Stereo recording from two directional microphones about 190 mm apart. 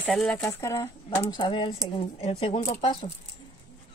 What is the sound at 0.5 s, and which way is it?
Speech, 15° left (ahead or behind).